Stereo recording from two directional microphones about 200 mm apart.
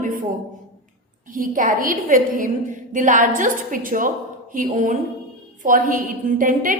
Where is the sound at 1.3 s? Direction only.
45° right (ahead or behind).